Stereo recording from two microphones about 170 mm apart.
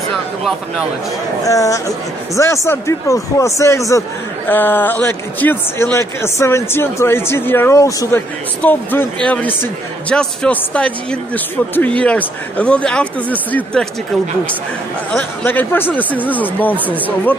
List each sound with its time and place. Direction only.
0.1 s speech: centre (ahead or behind)
1.4 s a man's voice: 20° left (ahead or behind)
15.1 s a man's voice: 10° left (ahead or behind)